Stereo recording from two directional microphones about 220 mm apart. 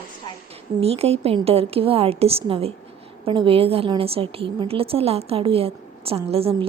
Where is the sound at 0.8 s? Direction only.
25° right (ahead or behind).